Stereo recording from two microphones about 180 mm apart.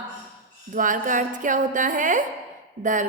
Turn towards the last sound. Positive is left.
turn(degrees=-45)  # may be behind; listen again after turning